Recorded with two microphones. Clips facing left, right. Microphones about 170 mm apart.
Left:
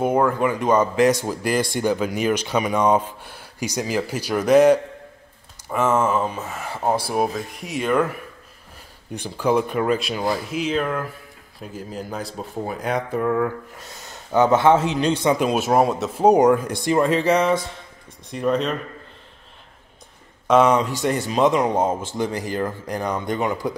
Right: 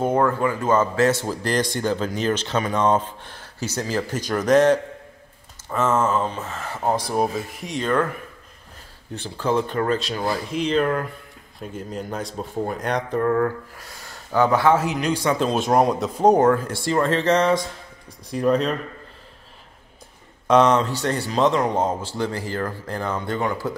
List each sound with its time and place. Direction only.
0.0 s speech: 10° left (ahead or behind)
9.1 s speech: 15° left (ahead or behind)
13.7 s speech: 20° left (ahead or behind); by 18.8 s centre (ahead or behind)
20.4 s speech: 5° left (ahead or behind)